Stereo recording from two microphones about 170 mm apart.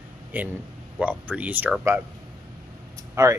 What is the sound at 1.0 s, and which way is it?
Speech, 10° right (ahead or behind).